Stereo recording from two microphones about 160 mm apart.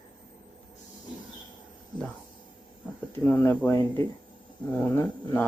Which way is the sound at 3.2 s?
15° left (ahead or behind).